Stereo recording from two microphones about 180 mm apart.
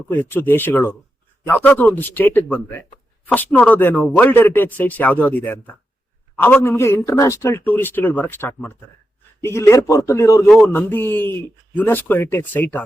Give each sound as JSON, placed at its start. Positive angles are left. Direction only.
{"t": 0.1, "sound": "speech", "side_deg": 10}